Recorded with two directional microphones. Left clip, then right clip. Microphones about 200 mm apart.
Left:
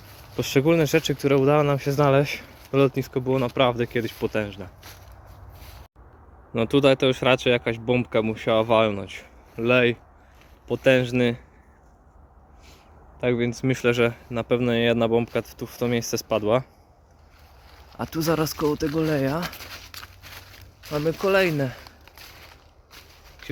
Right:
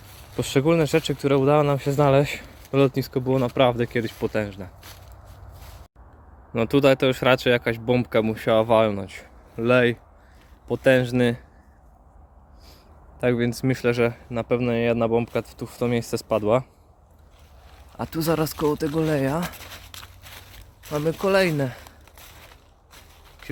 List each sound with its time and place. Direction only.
0.3 s speech: 5° right (ahead or behind)
3.1 s speech: 30° right (ahead or behind); by 4.7 s 10° right (ahead or behind)
6.5 s speech: 5° right (ahead or behind)
13.1 s speech: 25° right (ahead or behind)
13.7 s speech: 5° right (ahead or behind)
17.9 s speech: 5° right (ahead or behind)
19.5 s a sound: centre (ahead or behind)
22.9 s walk: centre (ahead or behind)